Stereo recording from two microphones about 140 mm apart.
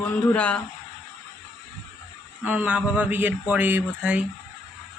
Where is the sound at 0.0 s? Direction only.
10° left (ahead or behind).